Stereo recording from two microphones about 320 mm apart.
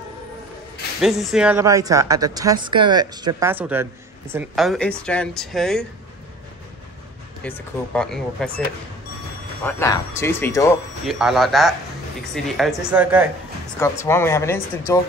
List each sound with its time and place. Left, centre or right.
1.0 s a woman's voice: centre
7.4 s speech: centre
9.7 s speech: centre
13.7 s speech: centre